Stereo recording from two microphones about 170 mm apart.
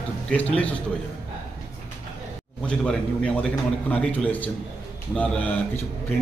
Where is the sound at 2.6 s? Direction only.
5° left (ahead or behind).